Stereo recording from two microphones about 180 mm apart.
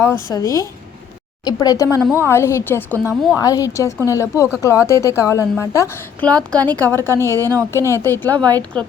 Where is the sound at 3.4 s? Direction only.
20° left (ahead or behind).